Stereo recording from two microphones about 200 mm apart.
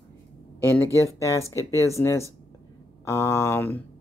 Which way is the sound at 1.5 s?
15° left (ahead or behind).